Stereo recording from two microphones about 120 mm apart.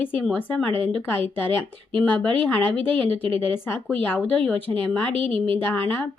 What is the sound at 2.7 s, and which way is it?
Speech, 50° right (ahead or behind).